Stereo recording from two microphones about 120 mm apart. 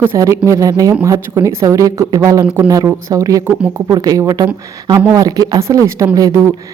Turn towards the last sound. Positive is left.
turn(degrees=-25)  # may be behind; listen again after turning